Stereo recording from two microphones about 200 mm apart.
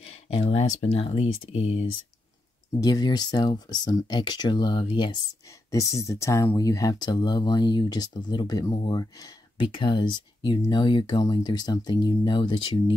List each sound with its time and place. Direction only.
0.0 s a sound: 30° left (ahead or behind)
0.9 s speech: 30° left (ahead or behind)
2.8 s speech: 20° left (ahead or behind)